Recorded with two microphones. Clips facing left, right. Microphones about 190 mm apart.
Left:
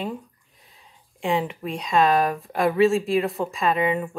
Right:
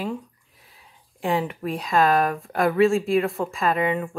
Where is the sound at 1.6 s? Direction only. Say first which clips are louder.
Even; centre (ahead or behind).